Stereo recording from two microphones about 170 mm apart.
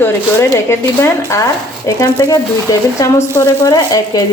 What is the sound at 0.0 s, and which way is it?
Speech, 15° left (ahead or behind).